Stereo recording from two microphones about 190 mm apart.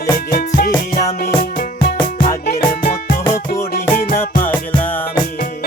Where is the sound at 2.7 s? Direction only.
50° left (ahead or behind).